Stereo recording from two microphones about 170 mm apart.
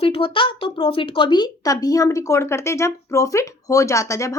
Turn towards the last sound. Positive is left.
turn(degrees=20)  # may be behind; listen again after turning